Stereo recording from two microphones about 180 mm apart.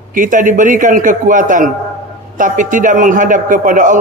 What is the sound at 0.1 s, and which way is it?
A man's voice, 45° right (ahead or behind).